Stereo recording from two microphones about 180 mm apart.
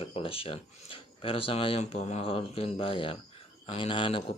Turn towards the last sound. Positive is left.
turn(degrees=30)  # may be behind; listen again after turning